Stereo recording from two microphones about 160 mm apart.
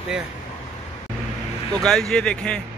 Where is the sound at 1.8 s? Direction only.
5° left (ahead or behind).